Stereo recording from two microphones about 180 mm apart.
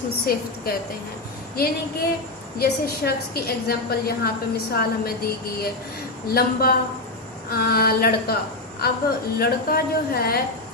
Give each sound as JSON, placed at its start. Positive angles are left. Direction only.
{"t": 0.3, "sound": "a woman's voice", "side_deg": 55}